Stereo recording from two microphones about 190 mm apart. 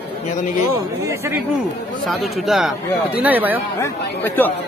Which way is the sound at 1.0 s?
15° right (ahead or behind).